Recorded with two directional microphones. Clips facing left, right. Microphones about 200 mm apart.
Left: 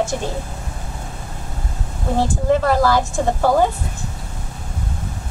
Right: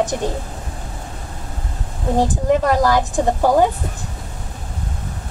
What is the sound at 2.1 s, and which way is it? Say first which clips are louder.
A woman's voice: right 1 dB; 15° right (ahead or behind).